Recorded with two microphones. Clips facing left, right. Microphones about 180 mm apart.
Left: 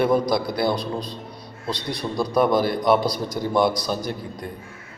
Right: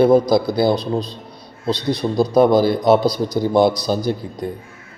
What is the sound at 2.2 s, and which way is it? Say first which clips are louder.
Speech: right 6 dB; 25° right (ahead or behind).